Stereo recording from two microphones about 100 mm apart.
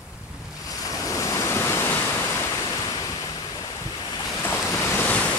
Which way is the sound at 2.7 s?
35° left (ahead or behind).